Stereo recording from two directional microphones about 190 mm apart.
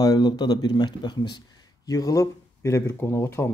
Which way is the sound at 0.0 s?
20° left (ahead or behind).